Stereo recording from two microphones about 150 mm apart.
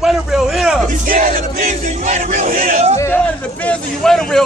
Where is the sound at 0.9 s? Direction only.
60° right (ahead or behind).